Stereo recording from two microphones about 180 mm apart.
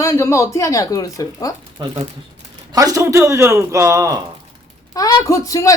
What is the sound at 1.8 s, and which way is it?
A man's voice, 25° right (ahead or behind).